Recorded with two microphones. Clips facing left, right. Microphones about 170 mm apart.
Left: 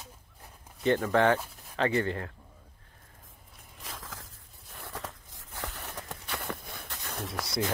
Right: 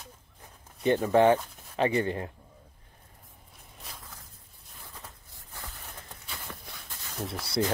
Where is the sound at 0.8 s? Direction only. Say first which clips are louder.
Right 3 dB; 15° right (ahead or behind).